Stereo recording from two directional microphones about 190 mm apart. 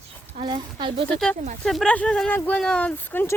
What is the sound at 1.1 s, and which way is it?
Speech, 5° left (ahead or behind).